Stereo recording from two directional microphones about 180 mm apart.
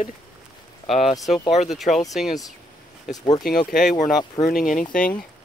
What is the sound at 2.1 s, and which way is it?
Speech, centre (ahead or behind).